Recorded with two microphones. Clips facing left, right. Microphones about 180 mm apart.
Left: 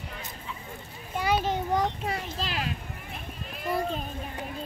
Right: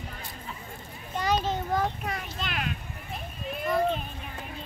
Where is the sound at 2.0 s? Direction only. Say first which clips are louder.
Left 2 dB; 30° left (ahead or behind).